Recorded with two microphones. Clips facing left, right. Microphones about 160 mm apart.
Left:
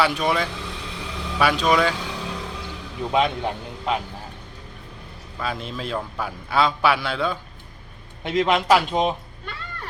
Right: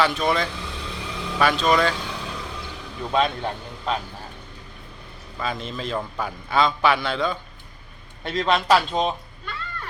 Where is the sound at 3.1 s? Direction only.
15° left (ahead or behind).